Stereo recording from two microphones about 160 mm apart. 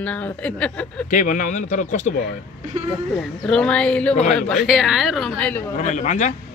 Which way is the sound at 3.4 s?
5° left (ahead or behind).